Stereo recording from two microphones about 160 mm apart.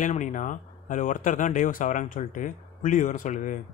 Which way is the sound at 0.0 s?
50° left (ahead or behind).